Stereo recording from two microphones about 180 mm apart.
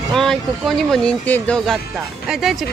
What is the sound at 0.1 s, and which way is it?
Speech, centre (ahead or behind).